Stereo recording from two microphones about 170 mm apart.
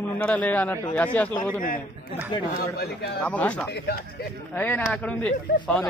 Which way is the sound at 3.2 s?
10° left (ahead or behind).